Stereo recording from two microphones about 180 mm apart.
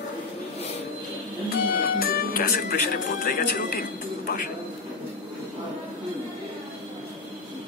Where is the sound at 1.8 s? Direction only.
55° left (ahead or behind).